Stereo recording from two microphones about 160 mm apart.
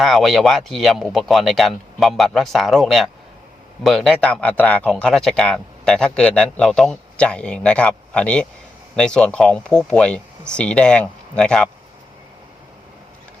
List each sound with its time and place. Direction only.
0.0 s speech: centre (ahead or behind)